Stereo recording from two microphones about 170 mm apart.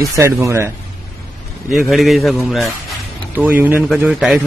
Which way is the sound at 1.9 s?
Centre (ahead or behind).